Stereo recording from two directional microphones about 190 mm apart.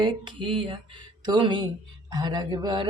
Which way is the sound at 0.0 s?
25° right (ahead or behind).